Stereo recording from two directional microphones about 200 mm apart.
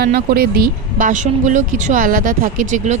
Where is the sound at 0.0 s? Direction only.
50° right (ahead or behind).